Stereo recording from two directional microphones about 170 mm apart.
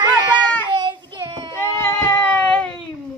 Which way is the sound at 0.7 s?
25° right (ahead or behind).